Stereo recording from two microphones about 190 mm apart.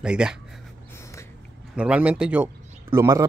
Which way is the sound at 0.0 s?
5° right (ahead or behind).